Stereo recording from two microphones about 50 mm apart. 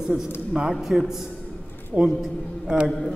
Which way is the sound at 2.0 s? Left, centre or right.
Right.